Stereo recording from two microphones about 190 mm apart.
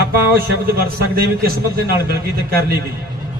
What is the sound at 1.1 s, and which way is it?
A man's voice, 55° right (ahead or behind).